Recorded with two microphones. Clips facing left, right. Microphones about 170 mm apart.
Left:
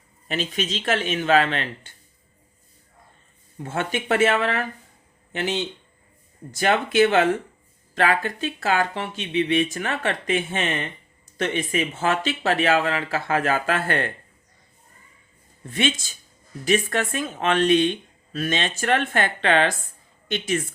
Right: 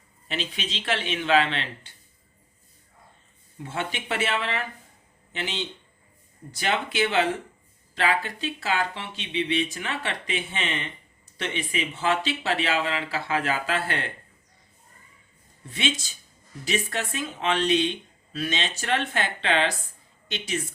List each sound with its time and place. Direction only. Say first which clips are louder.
0.3 s speech: left 6 dB; 45° left (ahead or behind)
3.6 s speech: left 5 dB; 50° left (ahead or behind)
15.7 s speech: left 5 dB; 50° left (ahead or behind)